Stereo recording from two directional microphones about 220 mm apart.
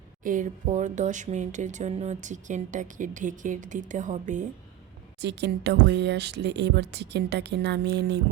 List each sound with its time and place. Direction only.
0.2 s speech: 35° right (ahead or behind)
5.2 s speech: 50° right (ahead or behind)